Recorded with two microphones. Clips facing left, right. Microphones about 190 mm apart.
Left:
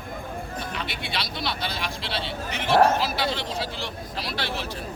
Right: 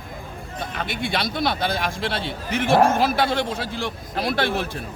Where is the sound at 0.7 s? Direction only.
50° right (ahead or behind).